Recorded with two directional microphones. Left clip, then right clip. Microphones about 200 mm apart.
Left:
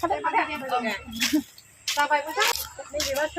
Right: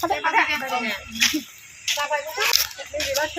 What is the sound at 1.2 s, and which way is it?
Speech, 25° left (ahead or behind).